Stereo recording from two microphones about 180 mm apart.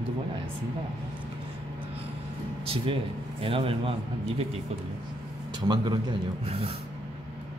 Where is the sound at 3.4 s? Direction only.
30° right (ahead or behind).